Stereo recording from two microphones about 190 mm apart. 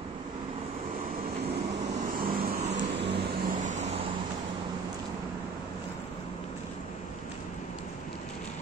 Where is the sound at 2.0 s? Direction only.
50° right (ahead or behind).